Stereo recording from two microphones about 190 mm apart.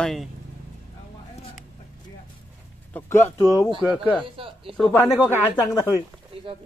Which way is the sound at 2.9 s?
10° left (ahead or behind).